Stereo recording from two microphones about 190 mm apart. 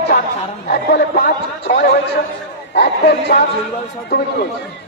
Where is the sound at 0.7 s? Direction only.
55° left (ahead or behind).